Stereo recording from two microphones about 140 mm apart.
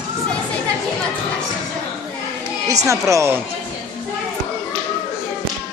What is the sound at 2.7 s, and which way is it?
Speech, 25° right (ahead or behind).